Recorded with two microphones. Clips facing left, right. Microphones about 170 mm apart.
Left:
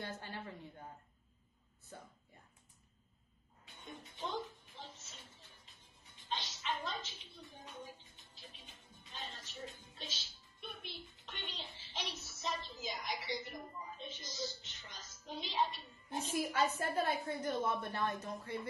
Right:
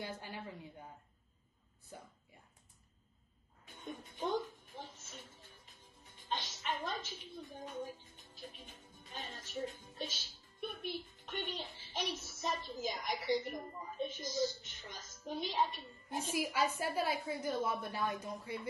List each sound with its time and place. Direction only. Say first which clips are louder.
0.0 s a woman's voice: right 1 dB; 10° right (ahead or behind)
3.6 s a sound: right 5 dB; 50° right (ahead or behind)
9.0 s music: right 2 dB; 50° right (ahead or behind)
15.2 s a woman's voice: right 2 dB; 50° right (ahead or behind)
16.3 s a woman's voice: even; 10° right (ahead or behind)